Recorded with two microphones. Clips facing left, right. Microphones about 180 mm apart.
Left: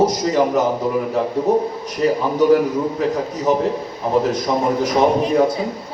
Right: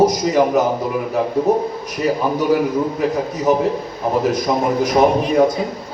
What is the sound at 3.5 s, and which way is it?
A man's voice, 10° right (ahead or behind).